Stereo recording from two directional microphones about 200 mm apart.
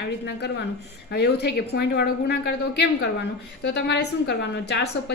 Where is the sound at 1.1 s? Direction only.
55° left (ahead or behind).